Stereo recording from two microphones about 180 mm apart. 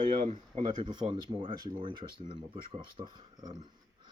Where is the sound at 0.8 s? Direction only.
30° right (ahead or behind).